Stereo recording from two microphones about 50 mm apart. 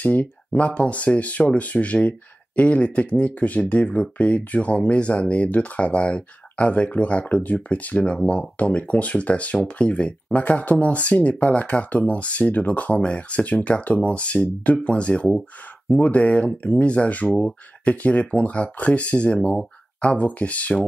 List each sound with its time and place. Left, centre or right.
0.0 s speech: left